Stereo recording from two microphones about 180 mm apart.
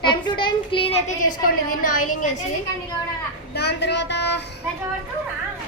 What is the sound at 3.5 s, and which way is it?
Speech, 70° left (ahead or behind).